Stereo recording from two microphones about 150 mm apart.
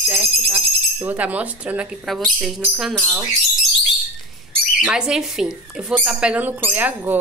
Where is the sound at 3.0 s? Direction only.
20° right (ahead or behind).